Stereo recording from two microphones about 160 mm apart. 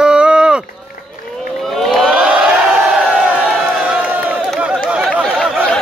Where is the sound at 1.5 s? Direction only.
Centre (ahead or behind).